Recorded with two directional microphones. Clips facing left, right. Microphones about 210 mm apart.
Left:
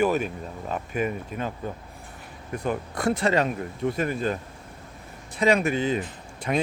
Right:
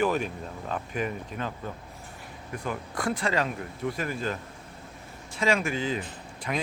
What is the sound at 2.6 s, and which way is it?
Speech, 25° left (ahead or behind).